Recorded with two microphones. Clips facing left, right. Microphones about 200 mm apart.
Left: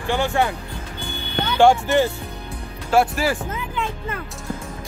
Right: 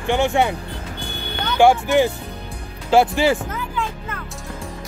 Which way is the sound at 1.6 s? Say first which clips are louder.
Right 1 dB; 15° right (ahead or behind).